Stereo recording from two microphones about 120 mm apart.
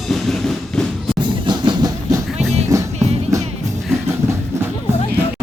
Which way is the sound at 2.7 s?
25° right (ahead or behind).